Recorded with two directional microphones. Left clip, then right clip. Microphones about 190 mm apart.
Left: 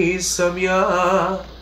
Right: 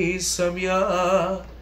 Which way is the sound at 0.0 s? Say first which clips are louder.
Left 4 dB; 15° left (ahead or behind).